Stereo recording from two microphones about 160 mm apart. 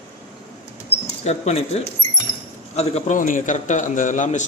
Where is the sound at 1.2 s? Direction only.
40° left (ahead or behind).